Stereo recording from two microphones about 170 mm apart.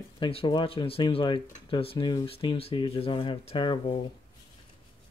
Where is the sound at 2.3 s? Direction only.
35° left (ahead or behind).